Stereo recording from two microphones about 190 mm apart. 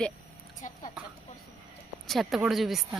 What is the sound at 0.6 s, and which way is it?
Speech, 45° left (ahead or behind).